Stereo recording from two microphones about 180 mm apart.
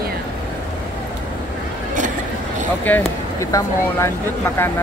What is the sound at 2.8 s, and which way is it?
Speech, 10° left (ahead or behind).